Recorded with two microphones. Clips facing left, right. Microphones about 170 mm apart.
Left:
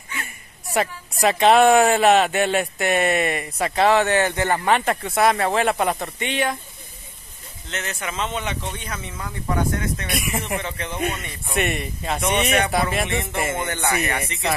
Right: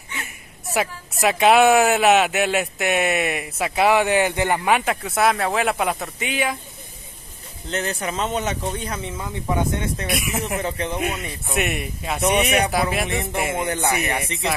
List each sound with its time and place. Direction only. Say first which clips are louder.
0.7 s speech: left 1 dB; centre (ahead or behind)
7.7 s speech: right 4 dB; 35° right (ahead or behind)
9.2 s speech: even; 20° right (ahead or behind)
10.0 s speech: right 1 dB; centre (ahead or behind)